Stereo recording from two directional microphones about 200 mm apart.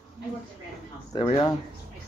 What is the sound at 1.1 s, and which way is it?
Speech, 20° left (ahead or behind).